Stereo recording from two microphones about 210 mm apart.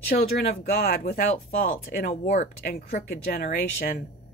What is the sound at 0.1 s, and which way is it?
A woman's voice, 45° left (ahead or behind).